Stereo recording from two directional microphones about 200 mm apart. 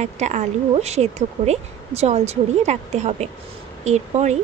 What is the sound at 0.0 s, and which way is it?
Speech, 35° right (ahead or behind).